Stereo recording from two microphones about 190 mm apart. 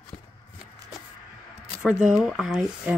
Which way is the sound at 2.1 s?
Centre (ahead or behind).